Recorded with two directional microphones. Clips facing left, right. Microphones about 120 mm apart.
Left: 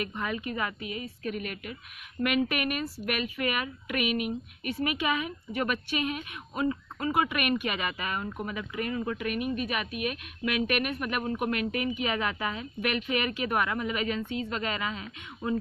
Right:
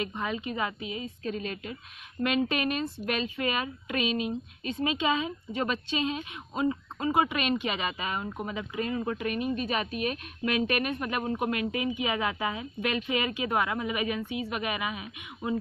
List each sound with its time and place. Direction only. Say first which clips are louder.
0.0 s a woman's voice: right 1 dB; 20° right (ahead or behind)